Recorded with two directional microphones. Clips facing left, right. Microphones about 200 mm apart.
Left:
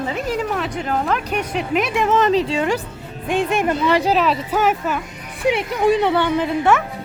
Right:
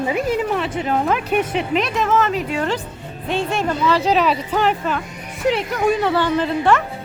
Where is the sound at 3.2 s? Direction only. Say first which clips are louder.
Left 2 dB; 15° left (ahead or behind).